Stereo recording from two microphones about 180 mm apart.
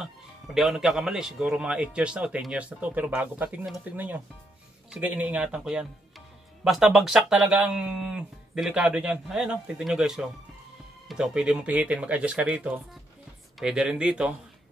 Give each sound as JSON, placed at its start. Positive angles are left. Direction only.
{"t": 0.6, "sound": "speech", "side_deg": 0}